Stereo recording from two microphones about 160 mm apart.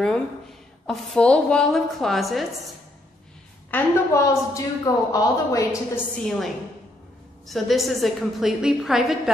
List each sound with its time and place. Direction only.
0.8 s a woman's voice: 5° left (ahead or behind)
3.7 s a woman's voice: 20° left (ahead or behind)
6.1 s a woman's voice: centre (ahead or behind)